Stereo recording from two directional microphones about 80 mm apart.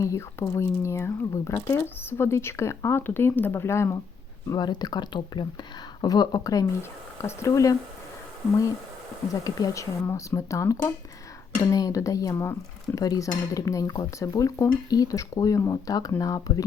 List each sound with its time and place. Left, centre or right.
0.0 s speech: left
4.4 s speech: left
6.0 s speech: left
7.2 s speech: left
9.4 s speech: left
12.3 s speech: left
13.0 s speech: left